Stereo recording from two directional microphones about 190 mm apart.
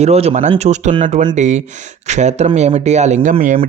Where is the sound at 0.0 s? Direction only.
35° right (ahead or behind).